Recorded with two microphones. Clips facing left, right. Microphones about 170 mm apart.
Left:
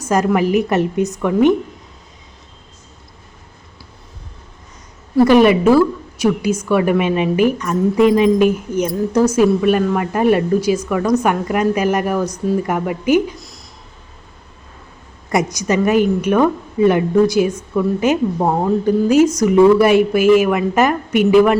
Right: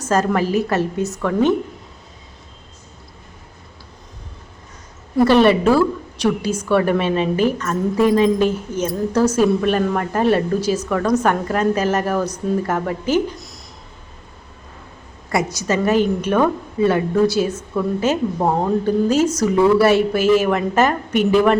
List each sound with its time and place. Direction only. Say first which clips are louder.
0.0 s a woman's voice: left 2 dB; 10° left (ahead or behind)
5.2 s a woman's voice: left 2 dB; 10° left (ahead or behind)
15.3 s a woman's voice: left 3 dB; 20° left (ahead or behind)